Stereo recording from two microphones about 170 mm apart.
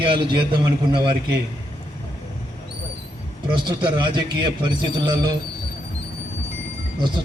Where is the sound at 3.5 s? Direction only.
30° right (ahead or behind).